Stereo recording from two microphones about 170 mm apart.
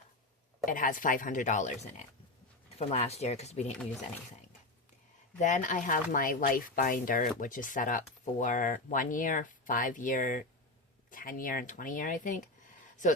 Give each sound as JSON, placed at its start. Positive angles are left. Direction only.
{"t": 0.6, "sound": "speech", "side_deg": 55}
{"t": 5.4, "sound": "speech", "side_deg": 45}